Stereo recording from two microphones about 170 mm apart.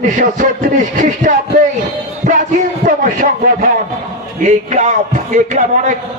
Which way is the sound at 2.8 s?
50° right (ahead or behind).